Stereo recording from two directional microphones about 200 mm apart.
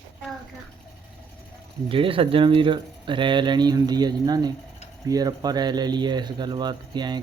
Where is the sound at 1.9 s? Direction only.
25° right (ahead or behind).